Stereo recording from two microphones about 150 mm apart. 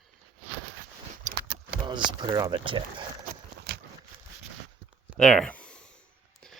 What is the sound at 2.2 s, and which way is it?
Speech, 25° right (ahead or behind).